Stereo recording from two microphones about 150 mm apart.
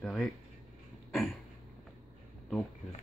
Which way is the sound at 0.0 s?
5° left (ahead or behind).